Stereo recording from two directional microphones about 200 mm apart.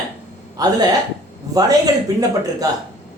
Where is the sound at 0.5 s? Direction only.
20° right (ahead or behind).